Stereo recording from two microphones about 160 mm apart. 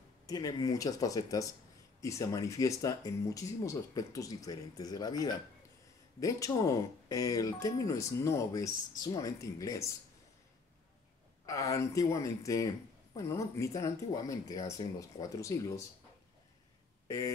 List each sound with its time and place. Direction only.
0.3 s speech: 25° left (ahead or behind)
11.4 s speech: 20° left (ahead or behind)